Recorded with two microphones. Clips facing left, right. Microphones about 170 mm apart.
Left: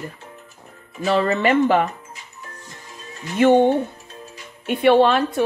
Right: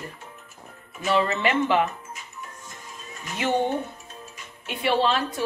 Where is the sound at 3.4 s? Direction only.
55° left (ahead or behind).